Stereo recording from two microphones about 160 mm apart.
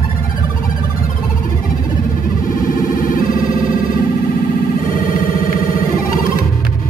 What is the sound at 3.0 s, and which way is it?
Music, 60° left (ahead or behind).